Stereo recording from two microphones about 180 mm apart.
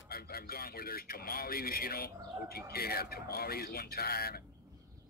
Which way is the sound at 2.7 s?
60° left (ahead or behind).